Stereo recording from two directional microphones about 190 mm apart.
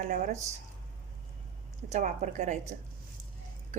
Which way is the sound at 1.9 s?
40° right (ahead or behind).